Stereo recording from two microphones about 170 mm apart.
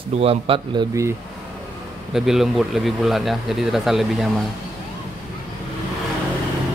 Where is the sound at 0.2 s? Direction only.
35° right (ahead or behind).